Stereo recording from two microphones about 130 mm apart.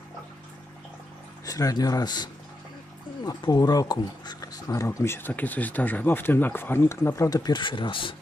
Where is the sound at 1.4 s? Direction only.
25° left (ahead or behind).